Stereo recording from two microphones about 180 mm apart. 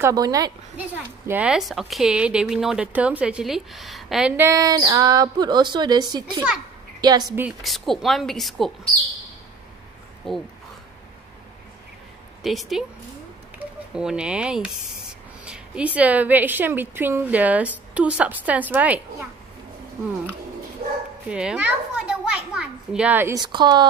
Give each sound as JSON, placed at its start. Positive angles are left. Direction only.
{"t": 0.0, "sound": "speech", "side_deg": -20}
{"t": 0.7, "sound": "a woman's voice", "side_deg": -10}
{"t": 4.4, "sound": "speech", "side_deg": -15}
{"t": 7.4, "sound": "a woman's voice", "side_deg": 0}
{"t": 10.3, "sound": "a woman's voice", "side_deg": 0}
{"t": 12.4, "sound": "a woman's voice", "side_deg": 0}
{"t": 21.3, "sound": "a woman's voice", "side_deg": -5}